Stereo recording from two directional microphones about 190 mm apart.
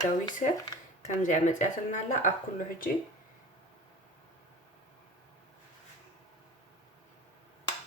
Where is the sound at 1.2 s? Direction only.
40° left (ahead or behind).